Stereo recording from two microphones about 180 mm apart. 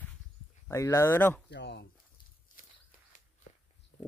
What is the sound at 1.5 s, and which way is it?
Speech, 70° left (ahead or behind).